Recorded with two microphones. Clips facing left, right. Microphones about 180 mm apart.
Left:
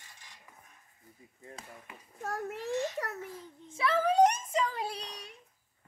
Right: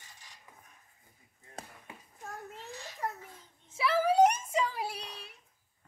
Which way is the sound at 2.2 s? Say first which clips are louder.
Left 9 dB; 80° left.